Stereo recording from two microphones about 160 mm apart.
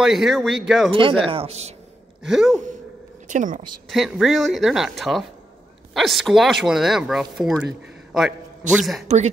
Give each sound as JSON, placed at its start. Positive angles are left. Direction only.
{"t": 0.0, "sound": "speech", "side_deg": 0}
{"t": 0.9, "sound": "a man's voice", "side_deg": -35}
{"t": 2.2, "sound": "speech", "side_deg": 0}
{"t": 3.3, "sound": "speech", "side_deg": -55}
{"t": 3.9, "sound": "a man's voice", "side_deg": 0}
{"t": 9.0, "sound": "speech", "side_deg": -45}